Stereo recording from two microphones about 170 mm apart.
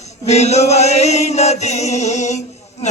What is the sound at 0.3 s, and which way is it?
Chant, 40° left (ahead or behind).